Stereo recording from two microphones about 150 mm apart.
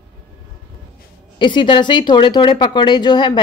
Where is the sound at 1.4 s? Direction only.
35° left (ahead or behind).